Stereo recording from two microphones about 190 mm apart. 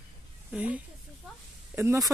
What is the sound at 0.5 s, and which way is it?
Speech, 5° right (ahead or behind).